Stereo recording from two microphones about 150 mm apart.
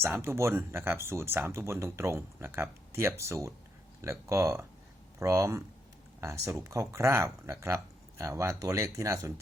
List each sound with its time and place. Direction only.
0.0 s speech: 15° right (ahead or behind)